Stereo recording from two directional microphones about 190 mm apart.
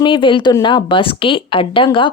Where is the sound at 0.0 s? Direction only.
25° left (ahead or behind).